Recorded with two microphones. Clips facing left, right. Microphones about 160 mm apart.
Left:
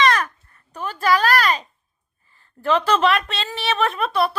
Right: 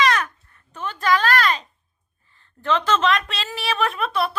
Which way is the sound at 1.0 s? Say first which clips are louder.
Left 2 dB; 10° left (ahead or behind).